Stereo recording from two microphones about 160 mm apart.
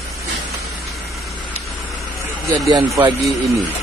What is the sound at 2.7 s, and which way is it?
Speech, 30° right (ahead or behind).